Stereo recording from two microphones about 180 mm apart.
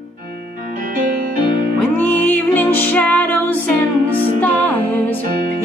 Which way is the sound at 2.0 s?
10° left (ahead or behind).